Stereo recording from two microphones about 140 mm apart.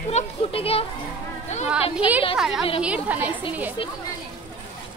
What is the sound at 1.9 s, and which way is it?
A woman's voice, 10° right (ahead or behind).